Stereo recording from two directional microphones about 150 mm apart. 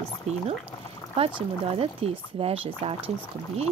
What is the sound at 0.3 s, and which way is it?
Speech, 45° right (ahead or behind).